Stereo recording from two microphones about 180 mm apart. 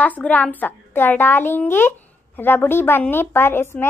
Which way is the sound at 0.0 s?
10° left (ahead or behind).